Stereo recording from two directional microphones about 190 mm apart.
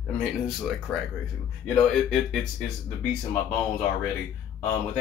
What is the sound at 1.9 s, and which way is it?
Speech, centre (ahead or behind).